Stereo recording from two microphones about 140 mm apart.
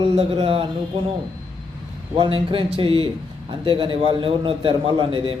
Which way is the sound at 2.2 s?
40° right (ahead or behind).